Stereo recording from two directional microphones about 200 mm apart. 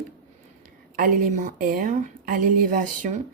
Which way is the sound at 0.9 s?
45° right (ahead or behind).